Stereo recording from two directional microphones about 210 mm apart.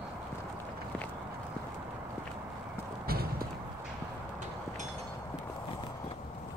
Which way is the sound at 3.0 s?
45° right (ahead or behind).